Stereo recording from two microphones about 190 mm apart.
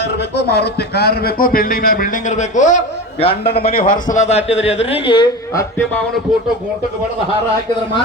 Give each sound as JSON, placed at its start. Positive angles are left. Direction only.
{"t": 0.2, "sound": "speech", "side_deg": 60}
{"t": 3.7, "sound": "speech", "side_deg": 50}
{"t": 4.1, "sound": "a man's voice", "side_deg": 35}